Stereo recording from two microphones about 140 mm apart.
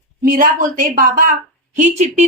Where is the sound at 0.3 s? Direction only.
85° right.